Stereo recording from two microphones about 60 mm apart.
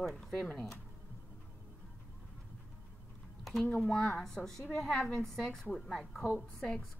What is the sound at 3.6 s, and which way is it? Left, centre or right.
A woman's voice, centre.